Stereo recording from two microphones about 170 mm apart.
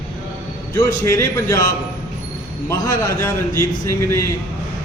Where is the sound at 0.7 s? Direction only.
15° left (ahead or behind).